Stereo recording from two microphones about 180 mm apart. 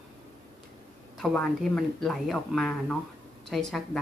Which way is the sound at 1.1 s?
5° left (ahead or behind).